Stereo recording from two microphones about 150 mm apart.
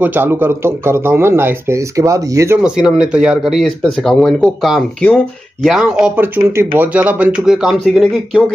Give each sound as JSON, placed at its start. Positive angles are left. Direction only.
{"t": 0.0, "sound": "speech", "side_deg": -15}
{"t": 2.6, "sound": "speech", "side_deg": -5}